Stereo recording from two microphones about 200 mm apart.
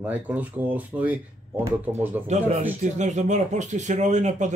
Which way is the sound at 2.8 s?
35° right (ahead or behind).